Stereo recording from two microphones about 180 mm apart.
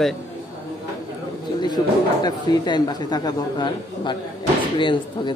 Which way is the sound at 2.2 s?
25° left (ahead or behind).